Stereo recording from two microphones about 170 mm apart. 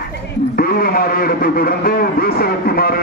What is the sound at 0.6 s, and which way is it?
Speech, 60° left (ahead or behind).